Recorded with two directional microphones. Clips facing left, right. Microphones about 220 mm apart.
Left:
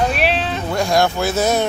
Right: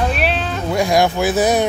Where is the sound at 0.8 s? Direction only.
15° right (ahead or behind).